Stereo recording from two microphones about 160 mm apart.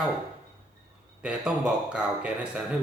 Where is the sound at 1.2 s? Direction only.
5° right (ahead or behind).